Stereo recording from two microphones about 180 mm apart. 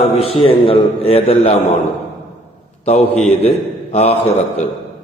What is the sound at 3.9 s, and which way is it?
Mantra, 35° left (ahead or behind).